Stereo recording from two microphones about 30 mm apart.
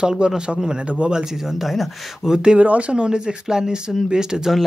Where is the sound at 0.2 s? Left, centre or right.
Right.